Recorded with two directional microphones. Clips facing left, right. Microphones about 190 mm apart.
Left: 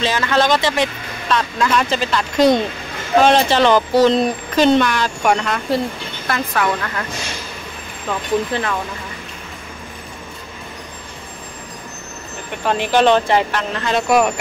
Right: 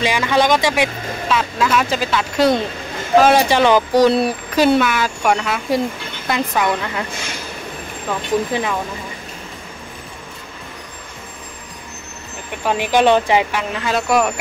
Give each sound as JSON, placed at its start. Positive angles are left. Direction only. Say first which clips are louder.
{"t": 0.0, "sound": "speech", "louder": "right 1 dB", "side_deg": -15}
{"t": 6.2, "sound": "speech", "louder": "right 1 dB", "side_deg": -15}
{"t": 8.5, "sound": "speech", "louder": "right 1 dB", "side_deg": -15}
{"t": 12.6, "sound": "speech", "louder": "even", "side_deg": -10}